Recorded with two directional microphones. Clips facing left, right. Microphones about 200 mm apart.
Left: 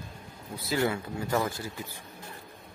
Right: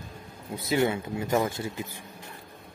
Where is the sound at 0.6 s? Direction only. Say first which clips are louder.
Right 3 dB; 25° right (ahead or behind).